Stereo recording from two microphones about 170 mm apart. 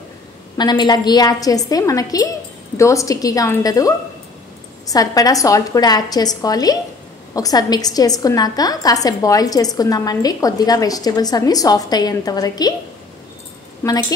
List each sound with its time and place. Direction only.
0.6 s a woman's voice: 25° left (ahead or behind)
13.8 s a woman's voice: 15° left (ahead or behind)